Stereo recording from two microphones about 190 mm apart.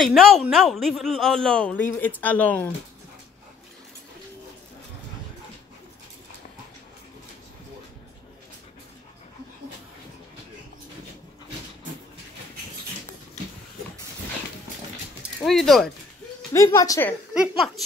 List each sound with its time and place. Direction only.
0.0 s a man's voice: centre (ahead or behind)
15.4 s a man's voice: centre (ahead or behind)
16.5 s a woman's voice: 15° left (ahead or behind)
17.3 s a woman's voice: 5° right (ahead or behind)